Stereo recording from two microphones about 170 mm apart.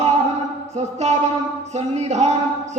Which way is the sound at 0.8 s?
40° right (ahead or behind).